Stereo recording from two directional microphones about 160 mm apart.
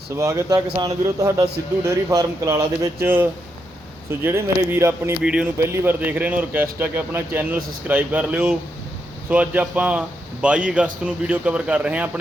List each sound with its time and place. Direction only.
0.2 s a man's voice: 20° right (ahead or behind)
5.2 s speech: 5° right (ahead or behind)
5.5 s speech: 15° right (ahead or behind)